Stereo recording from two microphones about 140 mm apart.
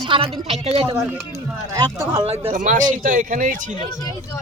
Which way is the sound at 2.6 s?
70° right (ahead or behind).